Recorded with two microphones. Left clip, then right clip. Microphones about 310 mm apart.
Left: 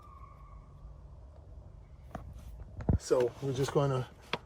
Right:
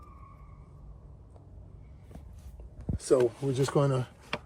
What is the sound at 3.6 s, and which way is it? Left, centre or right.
Speech, centre.